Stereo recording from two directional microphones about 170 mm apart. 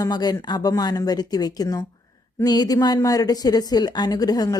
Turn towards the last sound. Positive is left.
turn(degrees=20)  # may be behind; listen again after turning